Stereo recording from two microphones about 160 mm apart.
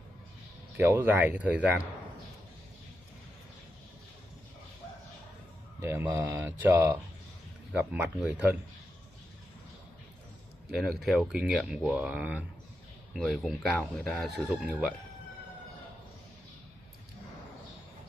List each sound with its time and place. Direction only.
0.7 s speech: 10° right (ahead or behind)
5.8 s speech: 15° right (ahead or behind)
10.7 s speech: centre (ahead or behind)